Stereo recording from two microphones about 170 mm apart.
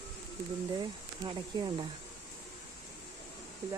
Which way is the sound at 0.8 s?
25° right (ahead or behind).